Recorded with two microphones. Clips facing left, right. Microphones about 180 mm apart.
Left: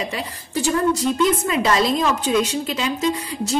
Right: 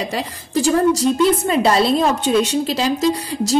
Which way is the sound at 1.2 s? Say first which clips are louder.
Right 3 dB; 30° right (ahead or behind).